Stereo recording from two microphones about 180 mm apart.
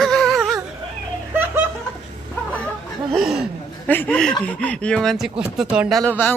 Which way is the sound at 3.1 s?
5° right (ahead or behind).